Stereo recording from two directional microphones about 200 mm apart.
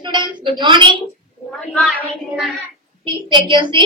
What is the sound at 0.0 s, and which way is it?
A woman's voice, 25° right (ahead or behind).